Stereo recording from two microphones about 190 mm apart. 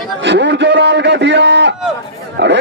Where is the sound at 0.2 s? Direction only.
65° right (ahead or behind).